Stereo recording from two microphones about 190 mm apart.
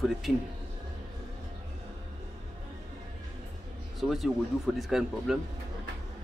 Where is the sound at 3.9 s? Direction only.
Centre (ahead or behind).